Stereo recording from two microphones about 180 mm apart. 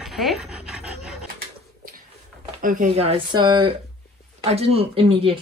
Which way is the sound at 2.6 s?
50° right (ahead or behind).